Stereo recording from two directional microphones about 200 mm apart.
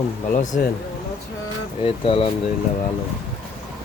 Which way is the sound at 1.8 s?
25° left (ahead or behind).